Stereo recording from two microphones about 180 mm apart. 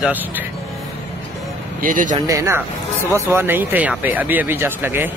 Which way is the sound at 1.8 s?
45° right (ahead or behind).